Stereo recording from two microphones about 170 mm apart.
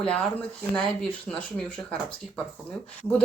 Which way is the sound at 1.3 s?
5° left (ahead or behind).